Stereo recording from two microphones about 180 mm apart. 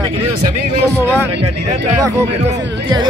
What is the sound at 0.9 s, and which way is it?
Speech, 10° right (ahead or behind).